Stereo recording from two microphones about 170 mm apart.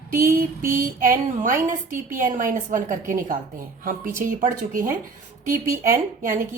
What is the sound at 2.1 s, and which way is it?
A woman's voice, 50° right (ahead or behind).